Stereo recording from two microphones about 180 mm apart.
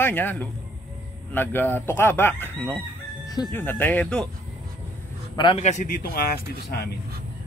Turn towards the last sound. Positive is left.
turn(degrees=60)  # may be behind; listen again after turning